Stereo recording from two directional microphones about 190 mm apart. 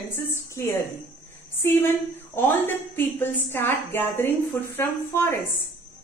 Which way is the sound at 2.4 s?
10° left (ahead or behind).